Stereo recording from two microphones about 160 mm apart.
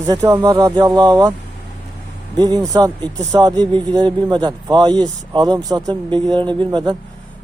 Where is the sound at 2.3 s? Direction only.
25° right (ahead or behind).